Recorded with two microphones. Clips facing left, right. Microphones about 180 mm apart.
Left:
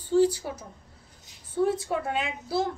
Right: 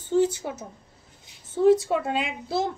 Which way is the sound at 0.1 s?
20° right (ahead or behind).